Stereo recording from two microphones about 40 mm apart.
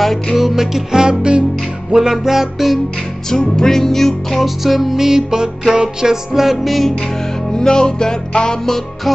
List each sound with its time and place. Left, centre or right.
0.0 s music: centre
0.4 s music: centre
1.0 s music: right
1.9 s music: centre
3.3 s music: centre
7.5 s music: centre
8.6 s music: centre